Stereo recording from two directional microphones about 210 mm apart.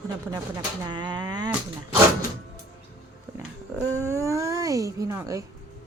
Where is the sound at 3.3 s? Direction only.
15° right (ahead or behind).